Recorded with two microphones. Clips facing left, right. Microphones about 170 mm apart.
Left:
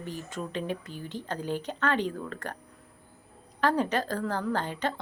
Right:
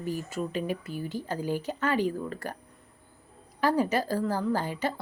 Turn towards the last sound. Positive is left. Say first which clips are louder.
# right 1 dB
turn(degrees=-10)  # may be behind; listen again after turning